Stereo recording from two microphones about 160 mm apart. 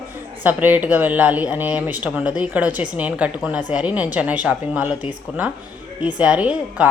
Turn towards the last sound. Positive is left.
turn(degrees=-10)  # may be behind; listen again after turning